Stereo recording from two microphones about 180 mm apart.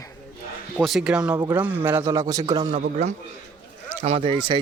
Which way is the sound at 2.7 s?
45° right (ahead or behind).